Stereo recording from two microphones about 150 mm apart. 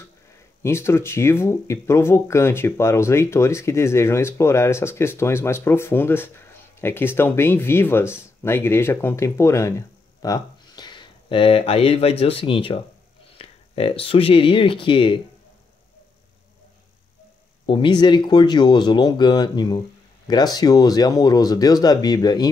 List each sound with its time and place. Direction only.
0.6 s speech: 15° left (ahead or behind); by 15.1 s 35° left (ahead or behind)
17.6 s speech: 35° left (ahead or behind)